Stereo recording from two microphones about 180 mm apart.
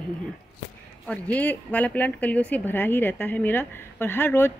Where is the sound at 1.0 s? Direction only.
5° left (ahead or behind).